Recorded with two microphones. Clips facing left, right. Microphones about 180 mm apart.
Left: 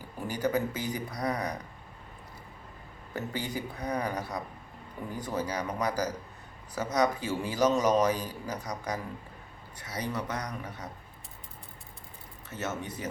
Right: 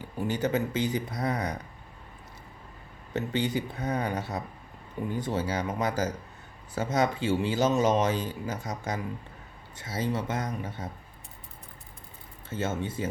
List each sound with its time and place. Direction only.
0.3 s a man's voice: 25° right (ahead or behind)
3.1 s a man's voice: 20° right (ahead or behind)
12.5 s a man's voice: 25° right (ahead or behind)